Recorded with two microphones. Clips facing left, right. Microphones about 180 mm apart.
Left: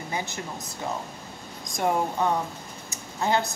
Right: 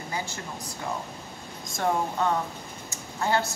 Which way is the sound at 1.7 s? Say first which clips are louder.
Left 2 dB; 15° left (ahead or behind).